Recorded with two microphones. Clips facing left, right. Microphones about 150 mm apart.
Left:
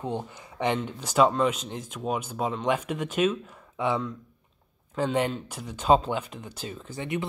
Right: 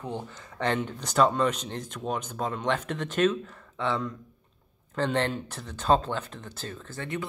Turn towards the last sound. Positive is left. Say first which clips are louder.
# left 3 dB
turn(degrees=15)  # may be behind; listen again after turning